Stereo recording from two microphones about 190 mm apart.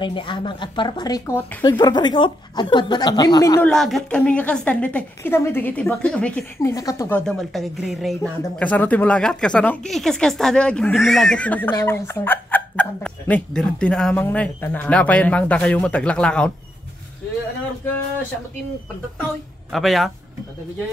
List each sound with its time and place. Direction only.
0.0 s speech: 25° left (ahead or behind)
3.6 s a woman's voice: centre (ahead or behind)
19.7 s a woman's voice: centre (ahead or behind)